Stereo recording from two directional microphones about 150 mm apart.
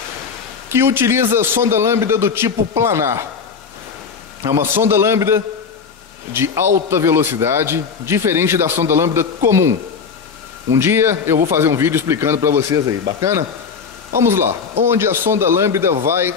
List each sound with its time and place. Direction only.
0.7 s a man's voice: 15° right (ahead or behind)
4.4 s a man's voice: 15° right (ahead or behind)
14.1 s a man's voice: 15° right (ahead or behind)